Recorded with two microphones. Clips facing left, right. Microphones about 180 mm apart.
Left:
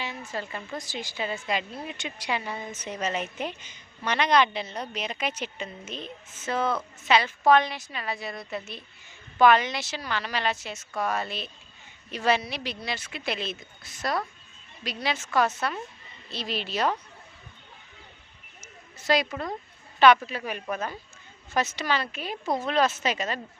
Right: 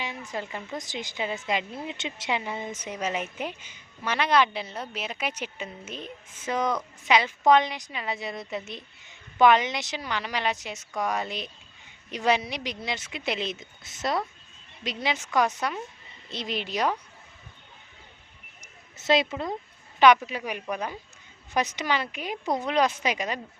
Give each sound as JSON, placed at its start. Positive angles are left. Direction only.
{"t": 0.3, "sound": "a woman's voice", "side_deg": -15}
{"t": 18.6, "sound": "a sound", "side_deg": -20}
{"t": 20.0, "sound": "a woman's voice", "side_deg": -15}